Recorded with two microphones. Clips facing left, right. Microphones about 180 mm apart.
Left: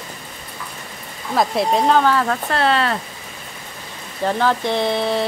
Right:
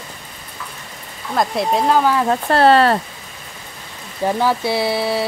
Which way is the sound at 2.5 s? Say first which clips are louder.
Right 8 dB; 40° right (ahead or behind).